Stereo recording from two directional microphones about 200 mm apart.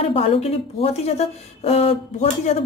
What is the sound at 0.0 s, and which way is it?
Speech, 30° left (ahead or behind).